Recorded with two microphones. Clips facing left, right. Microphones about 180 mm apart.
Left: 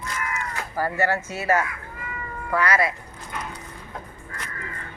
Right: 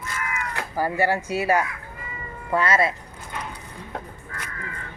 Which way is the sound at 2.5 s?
25° right (ahead or behind).